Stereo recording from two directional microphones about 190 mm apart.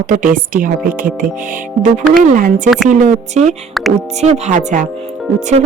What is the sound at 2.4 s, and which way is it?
A woman's voice, 45° right (ahead or behind).